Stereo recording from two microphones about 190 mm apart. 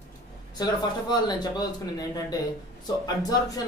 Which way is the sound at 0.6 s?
20° left (ahead or behind).